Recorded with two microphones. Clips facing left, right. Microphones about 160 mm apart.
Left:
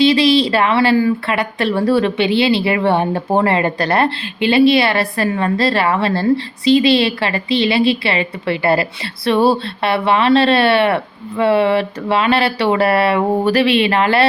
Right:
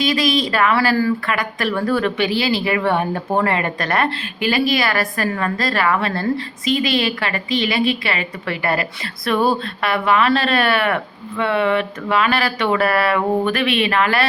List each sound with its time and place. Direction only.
0.0 s speech: 30° left (ahead or behind)